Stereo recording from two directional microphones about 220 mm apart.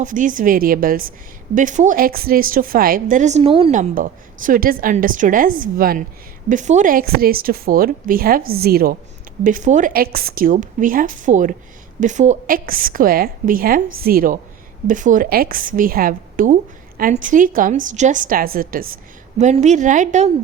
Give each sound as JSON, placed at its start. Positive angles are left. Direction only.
{"t": 0.0, "sound": "speech", "side_deg": -35}
{"t": 3.8, "sound": "speech", "side_deg": -35}